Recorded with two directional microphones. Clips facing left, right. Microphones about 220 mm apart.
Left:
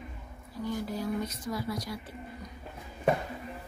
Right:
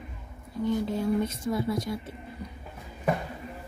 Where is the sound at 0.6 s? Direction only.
25° right (ahead or behind).